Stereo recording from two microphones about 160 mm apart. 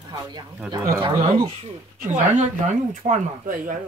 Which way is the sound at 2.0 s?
50° right (ahead or behind).